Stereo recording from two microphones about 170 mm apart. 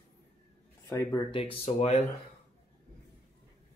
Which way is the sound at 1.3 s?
35° left (ahead or behind).